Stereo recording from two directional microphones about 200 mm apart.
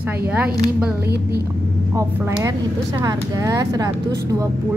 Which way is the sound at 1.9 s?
15° right (ahead or behind).